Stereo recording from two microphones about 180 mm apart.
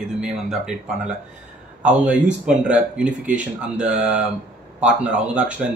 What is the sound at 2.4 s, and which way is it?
Speech, 5° right (ahead or behind).